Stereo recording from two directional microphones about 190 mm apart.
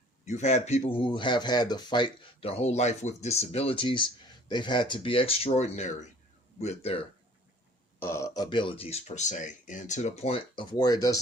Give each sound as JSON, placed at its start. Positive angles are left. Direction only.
{"t": 0.3, "sound": "speech", "side_deg": 40}
{"t": 7.9, "sound": "speech", "side_deg": 15}